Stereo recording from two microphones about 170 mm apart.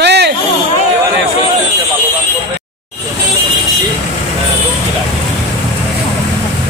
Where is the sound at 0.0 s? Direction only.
80° right.